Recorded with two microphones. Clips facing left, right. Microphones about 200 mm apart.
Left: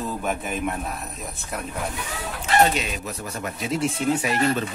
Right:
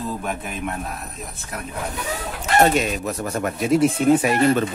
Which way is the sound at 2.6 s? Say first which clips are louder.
Right 3 dB; 45° right (ahead or behind).